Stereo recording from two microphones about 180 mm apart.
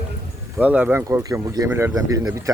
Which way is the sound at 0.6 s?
5° right (ahead or behind).